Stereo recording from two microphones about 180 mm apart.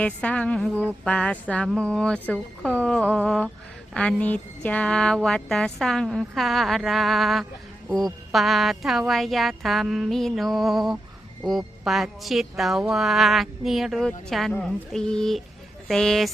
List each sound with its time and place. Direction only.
0.0 s speech: 5° left (ahead or behind)